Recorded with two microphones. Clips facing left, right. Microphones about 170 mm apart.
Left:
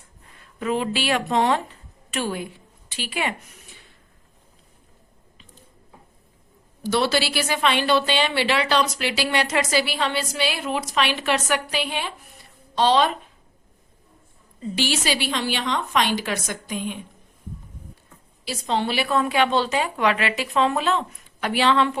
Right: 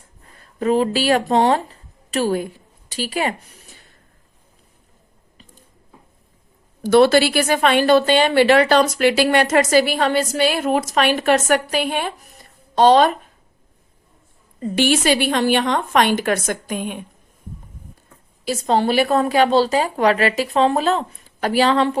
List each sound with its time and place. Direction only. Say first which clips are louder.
0.3 s speech: right 7 dB; 40° right (ahead or behind)
6.8 s a woman's voice: right 9 dB; 50° right (ahead or behind)
14.6 s a woman's voice: right 7 dB; 55° right (ahead or behind)
18.4 s a woman's voice: right 7 dB; 45° right (ahead or behind)